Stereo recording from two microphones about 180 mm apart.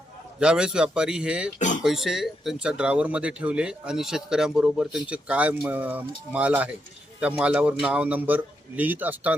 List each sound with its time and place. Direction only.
0.3 s speech: 5° right (ahead or behind)
1.5 s speech: 45° left (ahead or behind)
1.8 s a man's voice: centre (ahead or behind)